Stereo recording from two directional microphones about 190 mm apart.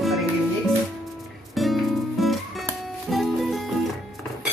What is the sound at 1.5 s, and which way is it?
Music, centre (ahead or behind).